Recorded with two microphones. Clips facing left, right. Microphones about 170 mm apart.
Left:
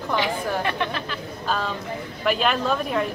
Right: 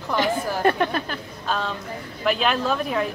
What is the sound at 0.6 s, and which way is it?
Speech, 45° right (ahead or behind).